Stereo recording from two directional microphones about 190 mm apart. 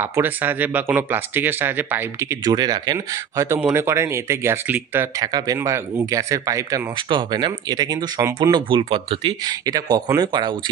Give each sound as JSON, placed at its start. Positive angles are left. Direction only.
{"t": 0.0, "sound": "speech", "side_deg": -10}